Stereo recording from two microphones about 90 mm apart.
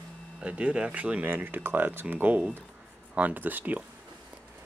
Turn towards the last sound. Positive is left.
turn(degrees=-20)  # may be behind; listen again after turning